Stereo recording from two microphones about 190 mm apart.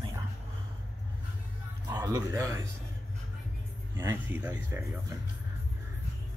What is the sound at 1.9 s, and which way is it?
Speech, 20° right (ahead or behind).